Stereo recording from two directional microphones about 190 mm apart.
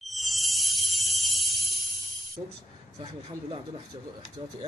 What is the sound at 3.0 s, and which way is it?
Speech, 30° right (ahead or behind).